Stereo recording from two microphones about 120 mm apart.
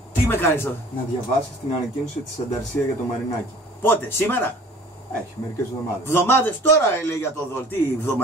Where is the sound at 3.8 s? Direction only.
15° left (ahead or behind).